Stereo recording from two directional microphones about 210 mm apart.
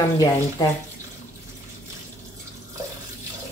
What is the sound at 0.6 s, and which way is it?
Speech, 15° left (ahead or behind).